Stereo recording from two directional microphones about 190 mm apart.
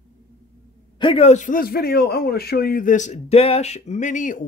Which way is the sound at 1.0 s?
30° left (ahead or behind).